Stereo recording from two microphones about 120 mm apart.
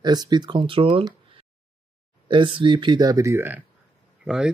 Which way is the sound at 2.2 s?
45° right (ahead or behind).